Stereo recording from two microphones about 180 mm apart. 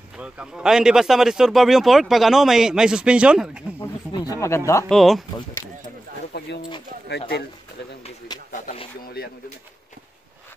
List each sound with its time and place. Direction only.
0.2 s speech: 5° right (ahead or behind)
4.2 s speech: 20° left (ahead or behind)
4.8 s speech: centre (ahead or behind)
6.3 s bird: 65° left (ahead or behind)
7.1 s speech: 65° left (ahead or behind)
8.3 s a sound: 20° left (ahead or behind)